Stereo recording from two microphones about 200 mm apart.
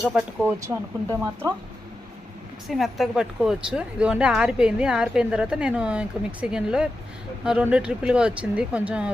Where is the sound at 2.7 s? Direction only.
Centre (ahead or behind).